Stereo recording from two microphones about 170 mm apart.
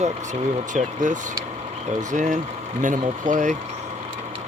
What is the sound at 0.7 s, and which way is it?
Speech, 45° right (ahead or behind).